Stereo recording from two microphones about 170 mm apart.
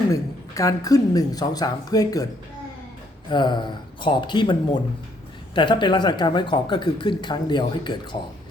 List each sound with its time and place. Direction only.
0.1 s speech: 20° left (ahead or behind)
3.2 s speech: 25° left (ahead or behind)